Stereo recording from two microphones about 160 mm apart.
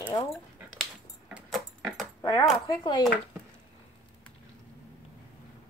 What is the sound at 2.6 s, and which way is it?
Speech, 25° left (ahead or behind).